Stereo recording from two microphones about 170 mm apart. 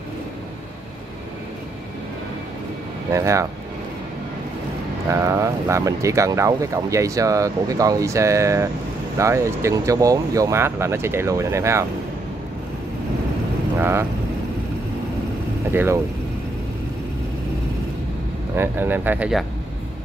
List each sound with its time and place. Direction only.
3.1 s speech: 20° right (ahead or behind)
5.1 s speech: 15° right (ahead or behind)
13.7 s speech: 15° right (ahead or behind)
15.7 s speech: 10° right (ahead or behind)
18.6 s speech: 10° right (ahead or behind)